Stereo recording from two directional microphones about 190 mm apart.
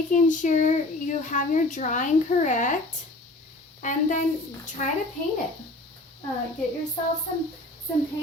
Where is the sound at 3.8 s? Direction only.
40° left (ahead or behind).